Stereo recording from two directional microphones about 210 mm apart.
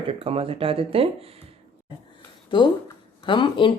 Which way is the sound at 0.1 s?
25° right (ahead or behind).